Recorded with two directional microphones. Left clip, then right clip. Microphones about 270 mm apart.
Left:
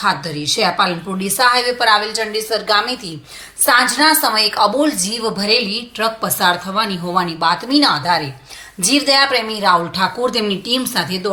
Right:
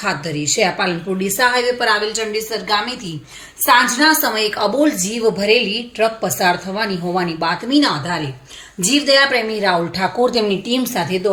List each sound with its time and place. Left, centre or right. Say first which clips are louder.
0.0 s a woman's voice: left 3 dB; centre
0.4 s a woman's voice: even; left
0.8 s a woman's voice: left 2 dB; centre
6.0 s a woman's voice: even; centre
6.7 s speech: left 2 dB; left
7.3 s a woman's voice: left 3 dB; centre